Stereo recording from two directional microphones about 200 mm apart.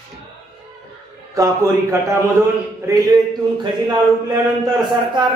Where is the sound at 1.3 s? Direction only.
15° right (ahead or behind).